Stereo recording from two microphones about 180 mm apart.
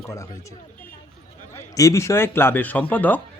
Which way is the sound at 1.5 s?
15° left (ahead or behind).